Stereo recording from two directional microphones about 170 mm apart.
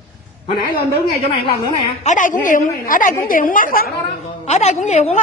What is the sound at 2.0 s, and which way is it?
A man's voice, 50° left (ahead or behind).